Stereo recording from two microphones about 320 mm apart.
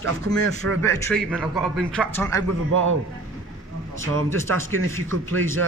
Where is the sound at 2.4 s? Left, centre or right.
Right.